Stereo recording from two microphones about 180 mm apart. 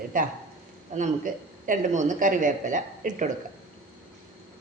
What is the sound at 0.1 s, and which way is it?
Speech, 50° right (ahead or behind).